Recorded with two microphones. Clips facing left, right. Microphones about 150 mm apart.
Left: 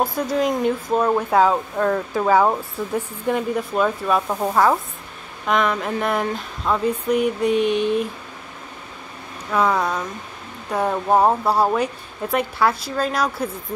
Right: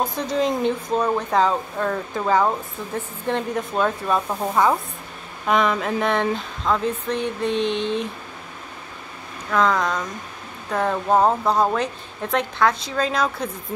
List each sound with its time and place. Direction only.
0.0 s speech: 5° left (ahead or behind)
9.5 s speech: 10° left (ahead or behind)